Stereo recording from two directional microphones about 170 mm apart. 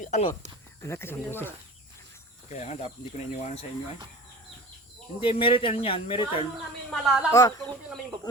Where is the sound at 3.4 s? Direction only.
40° left (ahead or behind).